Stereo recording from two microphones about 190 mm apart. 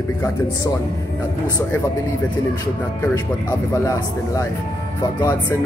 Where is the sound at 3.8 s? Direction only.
15° left (ahead or behind).